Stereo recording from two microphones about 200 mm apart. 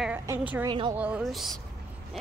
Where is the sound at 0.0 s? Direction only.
5° right (ahead or behind).